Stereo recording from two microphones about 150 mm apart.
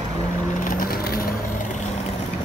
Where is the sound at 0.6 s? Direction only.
75° left (ahead or behind).